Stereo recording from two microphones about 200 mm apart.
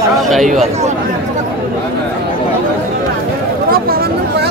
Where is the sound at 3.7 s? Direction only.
50° right (ahead or behind).